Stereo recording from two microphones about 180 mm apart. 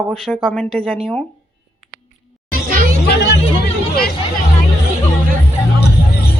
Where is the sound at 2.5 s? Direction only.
50° right (ahead or behind).